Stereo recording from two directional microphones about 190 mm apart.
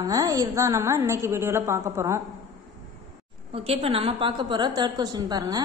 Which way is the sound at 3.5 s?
30° right (ahead or behind).